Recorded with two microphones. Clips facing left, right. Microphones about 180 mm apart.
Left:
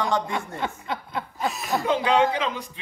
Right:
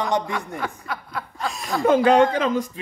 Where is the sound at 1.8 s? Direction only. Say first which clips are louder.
Right 6 dB; 45° right (ahead or behind).